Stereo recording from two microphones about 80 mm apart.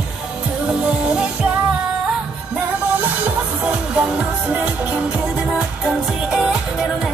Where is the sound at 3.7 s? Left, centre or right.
Centre.